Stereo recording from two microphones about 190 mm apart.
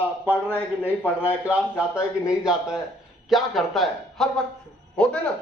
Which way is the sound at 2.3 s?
5° right (ahead or behind).